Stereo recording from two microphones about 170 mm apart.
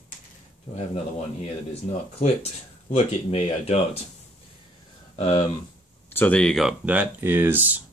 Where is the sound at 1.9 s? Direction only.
40° left (ahead or behind).